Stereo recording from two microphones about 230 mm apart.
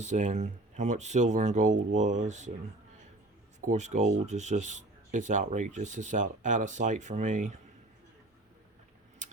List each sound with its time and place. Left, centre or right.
0.0 s speech: right
3.6 s speech: right